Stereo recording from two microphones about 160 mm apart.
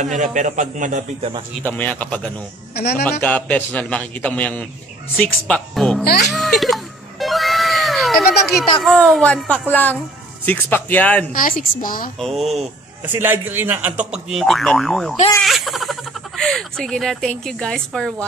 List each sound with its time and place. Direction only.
0.0 s speech: 50° right (ahead or behind)
1.6 s a man's voice: 10° left (ahead or behind)
2.7 s a man's voice: 80° left
3.2 s a man's voice: 10° left (ahead or behind)
6.3 s music: centre (ahead or behind)
8.8 s a man's voice: 5° left (ahead or behind)
11.3 s a woman's voice: 60° left (ahead or behind)
12.2 s speech: centre (ahead or behind)
13.1 s speech: 10° right (ahead or behind); by 18.1 s 5° left (ahead or behind)